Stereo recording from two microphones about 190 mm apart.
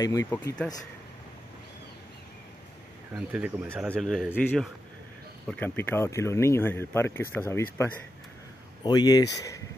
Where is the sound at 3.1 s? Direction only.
10° right (ahead or behind).